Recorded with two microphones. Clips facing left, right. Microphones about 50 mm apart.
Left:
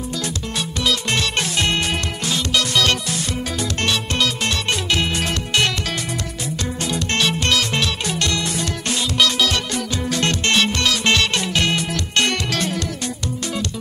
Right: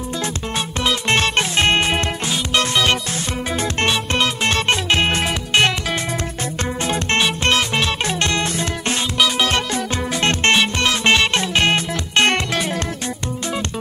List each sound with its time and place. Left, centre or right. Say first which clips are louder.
0.8 s music: right 3 dB; right
3.8 s music: right 2 dB; right
7.7 s music: right 2 dB; right